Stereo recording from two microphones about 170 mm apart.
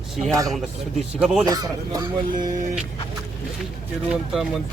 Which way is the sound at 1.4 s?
20° right (ahead or behind).